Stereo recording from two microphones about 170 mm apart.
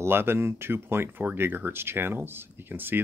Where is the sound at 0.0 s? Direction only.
15° right (ahead or behind).